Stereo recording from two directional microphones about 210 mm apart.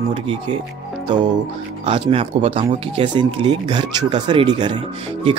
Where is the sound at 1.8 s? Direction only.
25° right (ahead or behind).